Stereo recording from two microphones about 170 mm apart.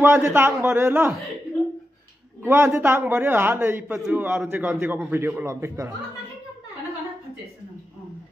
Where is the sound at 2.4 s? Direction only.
15° right (ahead or behind).